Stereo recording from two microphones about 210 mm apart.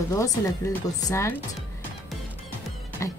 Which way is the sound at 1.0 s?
15° left (ahead or behind).